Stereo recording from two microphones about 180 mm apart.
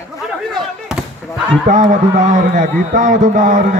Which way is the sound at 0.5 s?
5° right (ahead or behind).